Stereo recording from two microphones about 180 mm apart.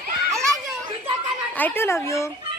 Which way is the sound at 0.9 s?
30° right (ahead or behind).